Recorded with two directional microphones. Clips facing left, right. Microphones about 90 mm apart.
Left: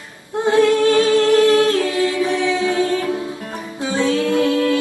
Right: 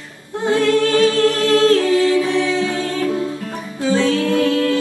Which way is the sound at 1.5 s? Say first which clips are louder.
Right 3 dB; 20° left (ahead or behind).